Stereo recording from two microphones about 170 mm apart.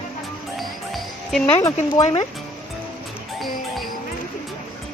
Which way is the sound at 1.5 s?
20° left (ahead or behind).